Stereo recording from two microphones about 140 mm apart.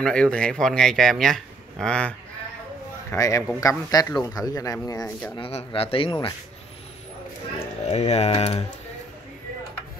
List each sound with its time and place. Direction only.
0.0 s speech: 5° left (ahead or behind)
3.1 s a man's voice: 20° left (ahead or behind)
5.3 s speech: 45° left (ahead or behind)
7.5 s speech: 50° left (ahead or behind)